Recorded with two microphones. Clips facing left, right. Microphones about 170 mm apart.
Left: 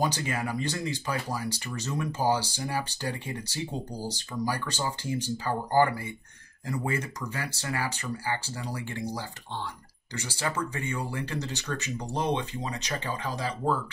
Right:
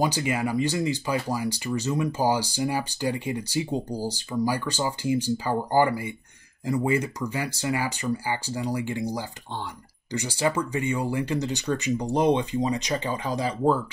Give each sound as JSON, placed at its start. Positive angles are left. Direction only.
{"t": 0.0, "sound": "speech", "side_deg": -10}